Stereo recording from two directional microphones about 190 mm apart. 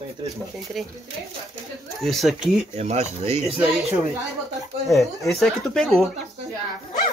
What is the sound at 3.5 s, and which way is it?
Speech, 5° right (ahead or behind).